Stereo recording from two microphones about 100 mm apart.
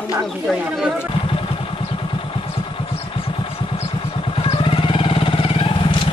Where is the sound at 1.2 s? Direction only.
60° left (ahead or behind).